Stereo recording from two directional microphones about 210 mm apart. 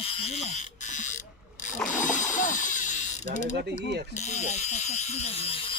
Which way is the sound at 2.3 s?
35° left (ahead or behind).